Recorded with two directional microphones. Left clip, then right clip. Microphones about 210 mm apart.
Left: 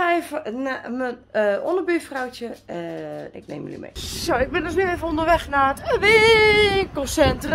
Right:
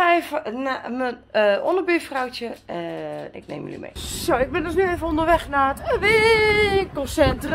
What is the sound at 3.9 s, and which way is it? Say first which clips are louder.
Speech: right 1 dB; 10° left (ahead or behind).